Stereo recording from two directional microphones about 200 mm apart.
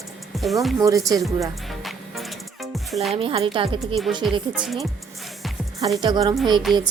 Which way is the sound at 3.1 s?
30° right (ahead or behind).